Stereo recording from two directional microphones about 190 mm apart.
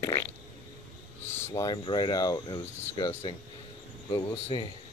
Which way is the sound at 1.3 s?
10° left (ahead or behind).